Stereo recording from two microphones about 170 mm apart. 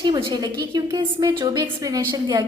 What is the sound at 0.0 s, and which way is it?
A woman's voice, 25° right (ahead or behind).